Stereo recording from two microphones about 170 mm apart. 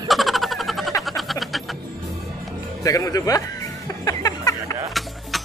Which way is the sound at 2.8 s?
20° left (ahead or behind).